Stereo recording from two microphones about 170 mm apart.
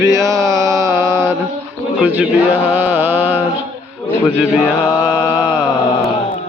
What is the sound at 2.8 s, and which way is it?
Music, 10° right (ahead or behind).